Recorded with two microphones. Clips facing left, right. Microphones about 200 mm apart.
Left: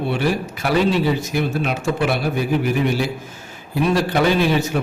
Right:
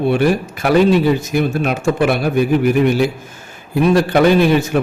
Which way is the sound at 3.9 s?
55° right (ahead or behind).